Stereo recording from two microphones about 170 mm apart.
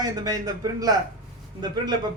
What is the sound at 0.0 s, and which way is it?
Speech, 25° right (ahead or behind).